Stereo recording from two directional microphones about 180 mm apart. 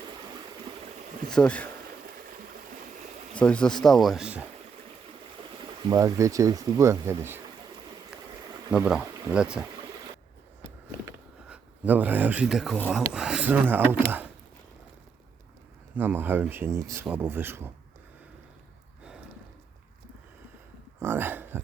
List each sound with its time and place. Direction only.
1.3 s speech: 5° left (ahead or behind)
3.3 s speech: 5° left (ahead or behind)
5.9 s speech: 20° right (ahead or behind)
8.7 s speech: 5° right (ahead or behind)
11.4 s speech: 5° right (ahead or behind)
16.0 s speech: 10° right (ahead or behind)
21.0 s throat clearing: 10° right (ahead or behind)